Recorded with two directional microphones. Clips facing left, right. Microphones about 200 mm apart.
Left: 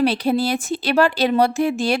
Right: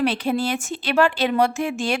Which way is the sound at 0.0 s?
35° left (ahead or behind).